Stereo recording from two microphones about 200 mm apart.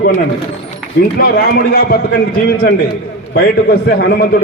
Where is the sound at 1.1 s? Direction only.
50° left (ahead or behind).